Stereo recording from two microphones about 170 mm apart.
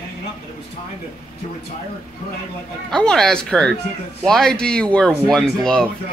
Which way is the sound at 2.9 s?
5° left (ahead or behind).